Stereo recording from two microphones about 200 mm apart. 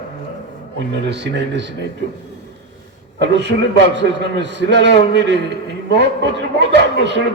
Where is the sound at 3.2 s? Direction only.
60° right (ahead or behind).